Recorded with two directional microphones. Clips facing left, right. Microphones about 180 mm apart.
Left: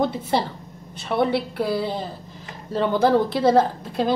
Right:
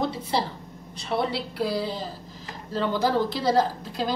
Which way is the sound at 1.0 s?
55° left (ahead or behind).